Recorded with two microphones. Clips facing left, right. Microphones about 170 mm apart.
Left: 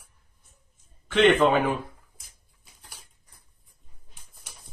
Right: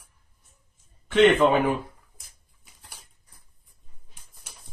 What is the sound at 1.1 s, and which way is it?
Speech, 15° right (ahead or behind).